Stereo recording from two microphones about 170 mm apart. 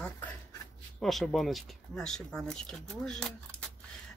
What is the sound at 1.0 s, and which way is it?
Speech, centre (ahead or behind).